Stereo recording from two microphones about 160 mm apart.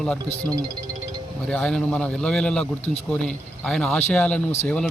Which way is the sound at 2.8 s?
45° left (ahead or behind).